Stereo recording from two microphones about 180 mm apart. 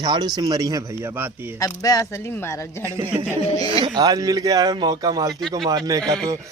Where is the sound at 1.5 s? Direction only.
20° left (ahead or behind).